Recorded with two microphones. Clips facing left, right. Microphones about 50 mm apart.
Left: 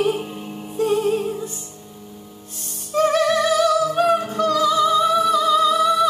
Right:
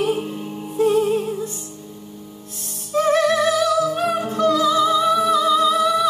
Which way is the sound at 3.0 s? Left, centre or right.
Centre.